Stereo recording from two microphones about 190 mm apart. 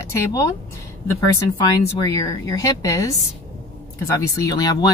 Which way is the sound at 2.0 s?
15° left (ahead or behind).